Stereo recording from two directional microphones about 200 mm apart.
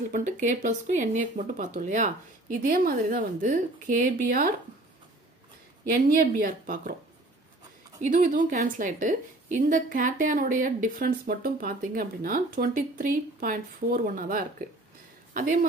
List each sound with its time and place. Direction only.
0.1 s speech: 40° right (ahead or behind)
6.0 s a woman's voice: 45° right (ahead or behind)
8.1 s a woman's voice: 40° right (ahead or behind)